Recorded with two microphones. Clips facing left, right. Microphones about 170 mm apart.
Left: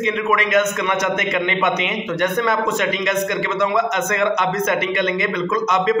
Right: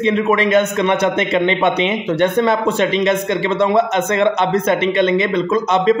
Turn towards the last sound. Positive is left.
turn(degrees=-30)  # may be behind; listen again after turning